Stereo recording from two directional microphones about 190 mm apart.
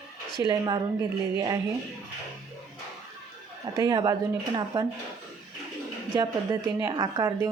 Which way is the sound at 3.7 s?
20° right (ahead or behind).